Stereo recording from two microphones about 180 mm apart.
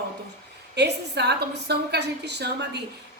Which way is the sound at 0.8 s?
70° right (ahead or behind).